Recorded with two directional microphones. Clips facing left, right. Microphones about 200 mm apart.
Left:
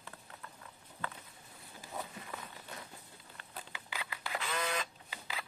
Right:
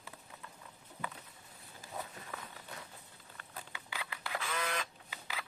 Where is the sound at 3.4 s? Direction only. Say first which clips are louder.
Even; 25° left (ahead or behind).